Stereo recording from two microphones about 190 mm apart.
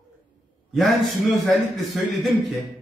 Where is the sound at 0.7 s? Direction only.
Centre (ahead or behind).